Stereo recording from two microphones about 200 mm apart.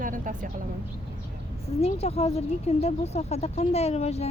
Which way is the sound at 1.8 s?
30° left (ahead or behind).